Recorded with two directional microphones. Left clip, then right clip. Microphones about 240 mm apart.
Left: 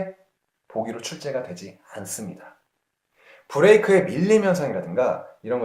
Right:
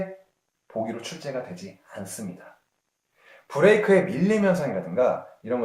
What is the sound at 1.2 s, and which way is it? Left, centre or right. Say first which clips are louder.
Speech: left 4 dB; left.